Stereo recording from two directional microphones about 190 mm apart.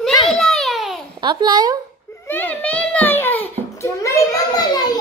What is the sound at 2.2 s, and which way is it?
A child's voice, 10° left (ahead or behind).